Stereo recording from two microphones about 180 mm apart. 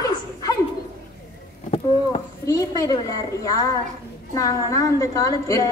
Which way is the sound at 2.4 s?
20° left (ahead or behind).